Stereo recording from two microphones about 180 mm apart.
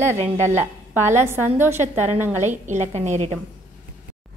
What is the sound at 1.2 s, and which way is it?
Speech, 15° right (ahead or behind).